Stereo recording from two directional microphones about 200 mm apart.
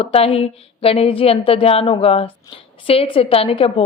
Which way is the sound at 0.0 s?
30° left (ahead or behind).